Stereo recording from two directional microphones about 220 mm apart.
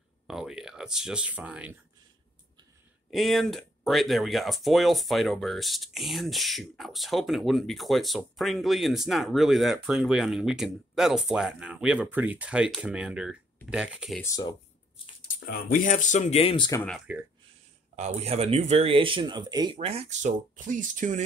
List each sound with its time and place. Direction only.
0.3 s speech: centre (ahead or behind)
3.1 s speech: centre (ahead or behind)
14.2 s speech: 15° left (ahead or behind)
15.4 s speech: 40° left (ahead or behind); by 16.8 s 20° left (ahead or behind)
17.1 s speech: 5° right (ahead or behind)
17.9 s speech: 30° right (ahead or behind)